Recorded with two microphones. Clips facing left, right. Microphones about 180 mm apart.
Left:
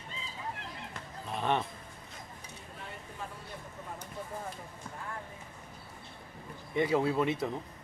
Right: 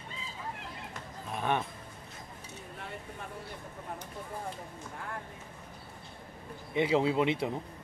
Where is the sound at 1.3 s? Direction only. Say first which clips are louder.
Even; 10° right (ahead or behind).